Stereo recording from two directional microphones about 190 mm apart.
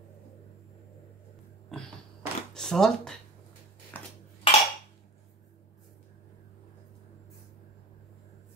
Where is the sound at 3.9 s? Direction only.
10° left (ahead or behind).